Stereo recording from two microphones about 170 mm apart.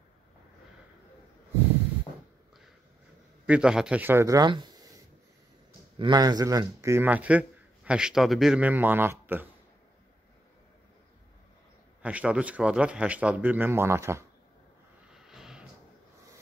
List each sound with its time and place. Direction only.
3.4 s speech: 5° right (ahead or behind); by 4.8 s 25° right (ahead or behind)
5.9 s speech: 25° right (ahead or behind)
12.0 s speech: 5° right (ahead or behind)
15.1 s a sound: centre (ahead or behind)